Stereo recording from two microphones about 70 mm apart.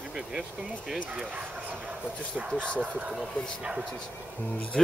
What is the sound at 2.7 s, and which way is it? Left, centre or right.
Speech, right.